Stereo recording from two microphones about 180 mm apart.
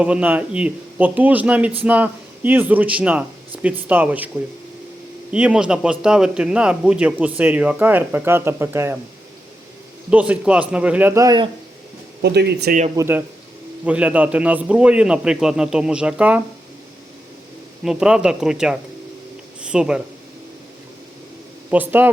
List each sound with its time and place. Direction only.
0.0 s a man's voice: 5° right (ahead or behind)
5.3 s a man's voice: 5° right (ahead or behind)
10.1 s a man's voice: 5° right (ahead or behind)
12.2 s speech: 65° right (ahead or behind)
13.0 s a man's voice: 10° right (ahead or behind)
17.8 s a man's voice: 5° right (ahead or behind)
21.7 s a man's voice: 10° right (ahead or behind)